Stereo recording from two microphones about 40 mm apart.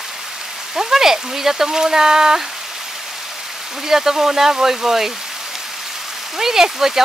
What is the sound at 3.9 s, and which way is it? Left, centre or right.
Speech, centre.